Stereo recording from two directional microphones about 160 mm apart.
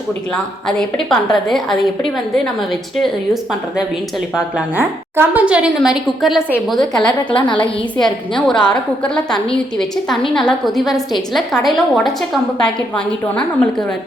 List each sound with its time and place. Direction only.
0.3 s a woman's voice: 5° left (ahead or behind)
4.4 s a woman's voice: 10° right (ahead or behind)
7.6 s a woman's voice: 30° left (ahead or behind)
8.4 s a woman's voice: 5° left (ahead or behind)